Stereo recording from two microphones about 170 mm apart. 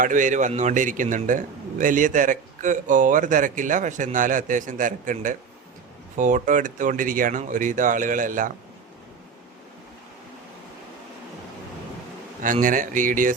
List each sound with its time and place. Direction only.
0.0 s a man's voice: 50° right (ahead or behind)
12.4 s a man's voice: 50° right (ahead or behind)